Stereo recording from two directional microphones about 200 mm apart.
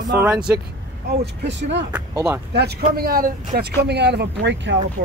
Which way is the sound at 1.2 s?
60° right (ahead or behind).